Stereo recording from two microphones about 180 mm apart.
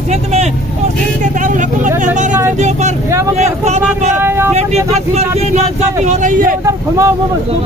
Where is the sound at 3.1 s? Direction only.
15° right (ahead or behind).